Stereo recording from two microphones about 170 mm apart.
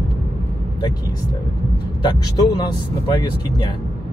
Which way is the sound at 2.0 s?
25° left (ahead or behind).